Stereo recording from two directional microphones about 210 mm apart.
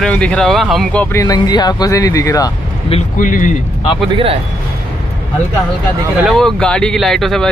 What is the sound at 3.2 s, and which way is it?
Speech, 40° left (ahead or behind).